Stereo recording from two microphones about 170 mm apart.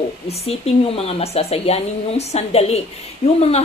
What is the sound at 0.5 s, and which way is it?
Speech, 35° left (ahead or behind).